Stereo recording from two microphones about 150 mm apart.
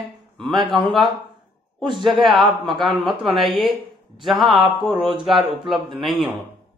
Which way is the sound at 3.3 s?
Centre (ahead or behind).